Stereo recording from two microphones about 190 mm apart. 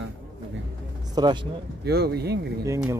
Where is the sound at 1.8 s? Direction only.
60° right (ahead or behind).